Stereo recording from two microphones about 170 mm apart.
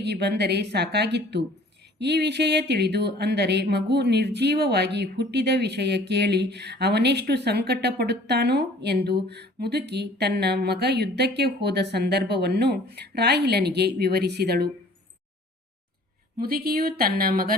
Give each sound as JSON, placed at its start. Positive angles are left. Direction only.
{"t": 0.0, "sound": "speech", "side_deg": -75}
{"t": 16.4, "sound": "speech", "side_deg": -60}